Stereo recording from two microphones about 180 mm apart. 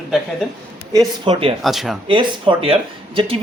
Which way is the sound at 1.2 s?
25° right (ahead or behind).